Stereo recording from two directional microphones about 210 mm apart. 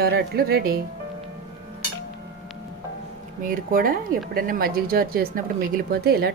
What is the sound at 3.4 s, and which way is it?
Speech, 40° right (ahead or behind).